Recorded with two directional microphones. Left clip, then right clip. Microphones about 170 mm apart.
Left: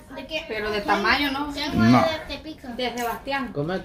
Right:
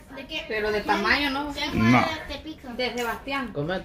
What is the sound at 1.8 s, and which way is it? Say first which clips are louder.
Speech: left 2 dB; 20° left (ahead or behind).